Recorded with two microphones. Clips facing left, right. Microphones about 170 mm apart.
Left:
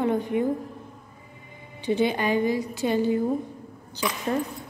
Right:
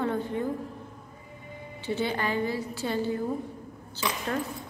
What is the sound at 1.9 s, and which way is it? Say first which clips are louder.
A woman's voice: left 6 dB; 15° left (ahead or behind).